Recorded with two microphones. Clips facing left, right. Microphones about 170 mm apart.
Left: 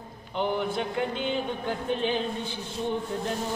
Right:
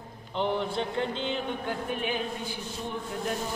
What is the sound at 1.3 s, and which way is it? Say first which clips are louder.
A man's voice: left 2 dB; 20° left (ahead or behind).